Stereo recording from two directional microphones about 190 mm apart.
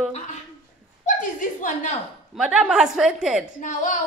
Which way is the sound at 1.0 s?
45° left (ahead or behind).